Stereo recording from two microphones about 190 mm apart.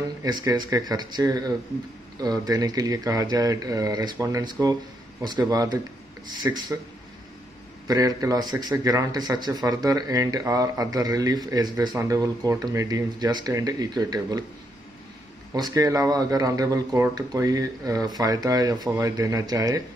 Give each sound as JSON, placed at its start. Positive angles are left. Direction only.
{"t": 0.2, "sound": "a man's voice", "side_deg": -20}
{"t": 7.9, "sound": "a man's voice", "side_deg": -20}
{"t": 15.5, "sound": "a man's voice", "side_deg": -20}